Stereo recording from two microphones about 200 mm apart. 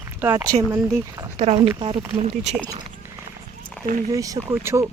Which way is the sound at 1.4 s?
30° right (ahead or behind).